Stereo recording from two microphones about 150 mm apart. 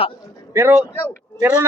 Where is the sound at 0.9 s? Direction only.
15° left (ahead or behind).